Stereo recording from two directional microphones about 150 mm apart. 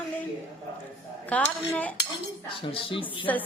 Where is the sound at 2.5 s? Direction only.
35° left (ahead or behind).